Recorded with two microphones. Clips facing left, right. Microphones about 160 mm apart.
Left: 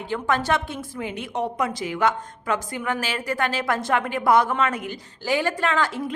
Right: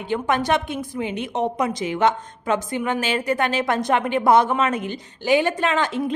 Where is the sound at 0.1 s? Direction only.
20° right (ahead or behind).